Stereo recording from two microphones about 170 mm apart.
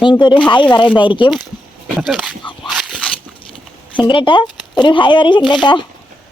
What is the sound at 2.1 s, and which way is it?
Speech, centre (ahead or behind).